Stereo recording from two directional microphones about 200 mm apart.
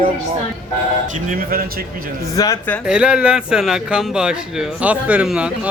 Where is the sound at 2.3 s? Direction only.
15° left (ahead or behind).